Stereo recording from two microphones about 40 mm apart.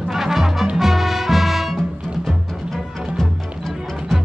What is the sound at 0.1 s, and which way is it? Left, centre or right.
Music, centre.